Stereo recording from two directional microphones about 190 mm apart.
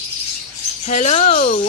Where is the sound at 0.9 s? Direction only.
35° left (ahead or behind).